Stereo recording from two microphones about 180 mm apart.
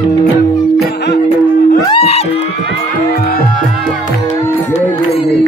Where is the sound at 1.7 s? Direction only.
25° left (ahead or behind).